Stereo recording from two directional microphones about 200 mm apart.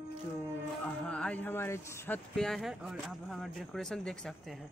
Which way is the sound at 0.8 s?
5° left (ahead or behind).